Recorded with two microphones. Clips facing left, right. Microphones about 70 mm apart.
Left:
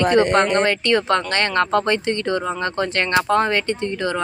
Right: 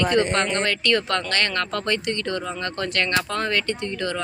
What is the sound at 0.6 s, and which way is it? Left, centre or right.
Speech, left.